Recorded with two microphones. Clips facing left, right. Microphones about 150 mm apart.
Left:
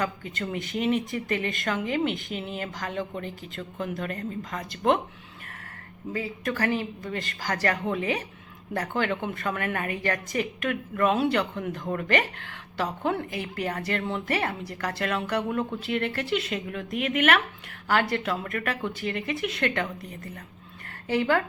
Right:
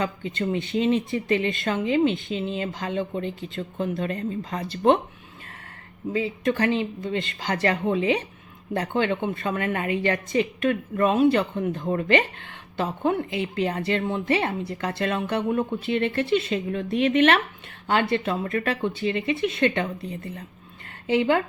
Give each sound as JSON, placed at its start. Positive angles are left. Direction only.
{"t": 0.0, "sound": "a woman's voice", "side_deg": -25}
{"t": 6.1, "sound": "a woman's voice", "side_deg": -25}